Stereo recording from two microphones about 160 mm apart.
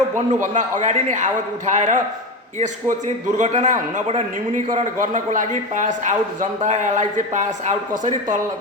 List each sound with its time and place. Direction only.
0.3 s speech: 50° right (ahead or behind)
3.3 s speech: 50° right (ahead or behind)